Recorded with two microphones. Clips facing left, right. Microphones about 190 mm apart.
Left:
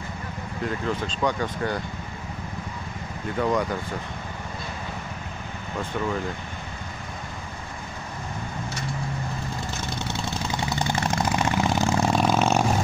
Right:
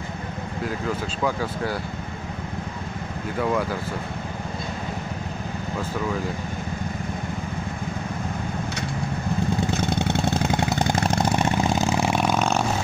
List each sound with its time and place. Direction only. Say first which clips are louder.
0.7 s speech: left 1 dB; 5° right (ahead or behind)
3.3 s speech: even; 5° right (ahead or behind)
9.7 s vehicle: right 8 dB; 60° right (ahead or behind)
11.1 s vehicle: right 1 dB; 30° right (ahead or behind)
11.5 s vehicle: right 1 dB; 20° right (ahead or behind)
12.0 s vehicle: left 1 dB; 5° right (ahead or behind)